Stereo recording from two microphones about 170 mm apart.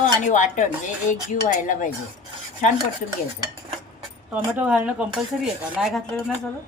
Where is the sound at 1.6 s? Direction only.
50° left (ahead or behind).